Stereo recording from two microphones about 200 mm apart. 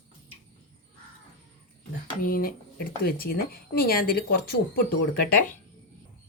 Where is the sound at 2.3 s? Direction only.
45° left (ahead or behind).